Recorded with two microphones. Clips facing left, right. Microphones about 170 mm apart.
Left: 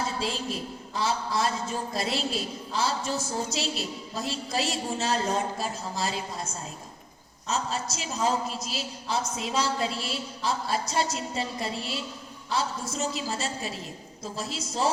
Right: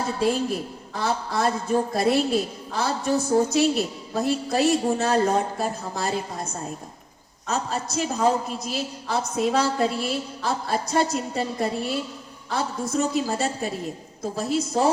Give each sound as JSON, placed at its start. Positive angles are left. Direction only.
{"t": 0.2, "sound": "a man's voice", "side_deg": -55}